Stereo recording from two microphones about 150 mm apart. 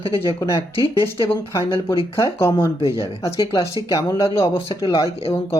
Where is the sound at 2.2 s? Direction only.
15° left (ahead or behind).